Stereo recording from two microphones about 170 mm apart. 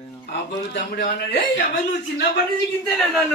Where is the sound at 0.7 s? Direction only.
85° left.